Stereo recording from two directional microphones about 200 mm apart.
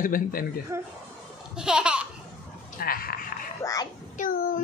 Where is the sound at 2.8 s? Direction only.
45° left (ahead or behind).